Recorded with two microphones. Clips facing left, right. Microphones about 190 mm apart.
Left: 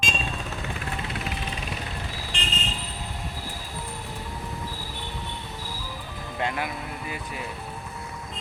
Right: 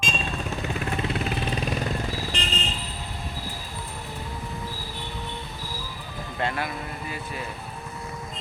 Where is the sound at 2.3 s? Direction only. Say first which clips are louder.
Right 3 dB; 40° right (ahead or behind).